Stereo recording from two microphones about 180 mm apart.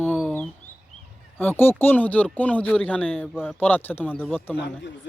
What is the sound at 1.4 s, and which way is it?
Speech, 10° left (ahead or behind).